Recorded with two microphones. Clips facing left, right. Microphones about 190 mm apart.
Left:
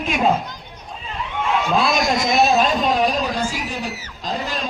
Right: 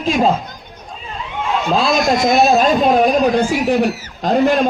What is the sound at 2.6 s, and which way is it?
A man's voice, 45° right (ahead or behind).